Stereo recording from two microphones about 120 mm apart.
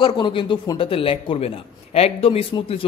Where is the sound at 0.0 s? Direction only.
40° left (ahead or behind).